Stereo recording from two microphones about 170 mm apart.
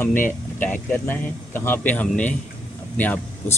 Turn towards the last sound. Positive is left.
turn(degrees=10)  # may be behind; listen again after turning